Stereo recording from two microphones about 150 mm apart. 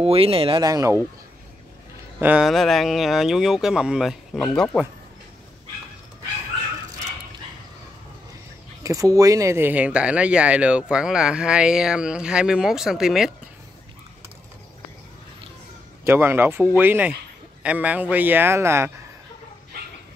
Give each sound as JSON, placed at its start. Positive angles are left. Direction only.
{"t": 0.0, "sound": "speech", "side_deg": -40}
{"t": 2.1, "sound": "speech", "side_deg": -10}
{"t": 2.4, "sound": "speech", "side_deg": 0}
{"t": 8.8, "sound": "speech", "side_deg": -20}
{"t": 16.0, "sound": "speech", "side_deg": -15}